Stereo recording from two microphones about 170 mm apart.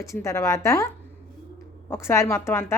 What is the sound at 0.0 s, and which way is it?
Speech, 15° left (ahead or behind).